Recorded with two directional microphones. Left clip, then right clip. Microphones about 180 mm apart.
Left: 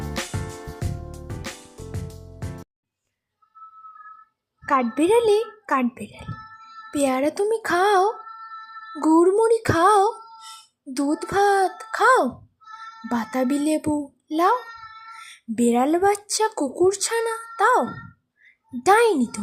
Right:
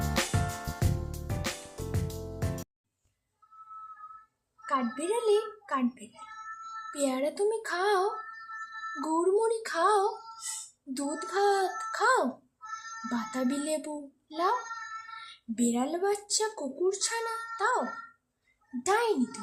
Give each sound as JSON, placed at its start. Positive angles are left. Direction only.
{"t": 0.1, "sound": "music", "side_deg": 0}
{"t": 4.6, "sound": "a child's voice", "side_deg": 35}
{"t": 15.5, "sound": "speech", "side_deg": 30}